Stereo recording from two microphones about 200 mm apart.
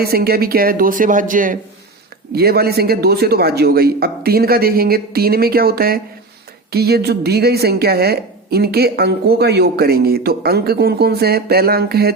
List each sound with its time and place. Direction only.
0.0 s speech: 50° right (ahead or behind)